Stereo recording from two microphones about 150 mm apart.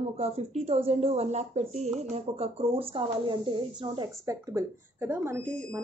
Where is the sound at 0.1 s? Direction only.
45° right (ahead or behind).